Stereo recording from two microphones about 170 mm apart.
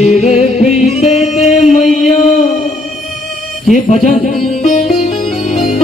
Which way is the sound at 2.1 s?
45° left (ahead or behind).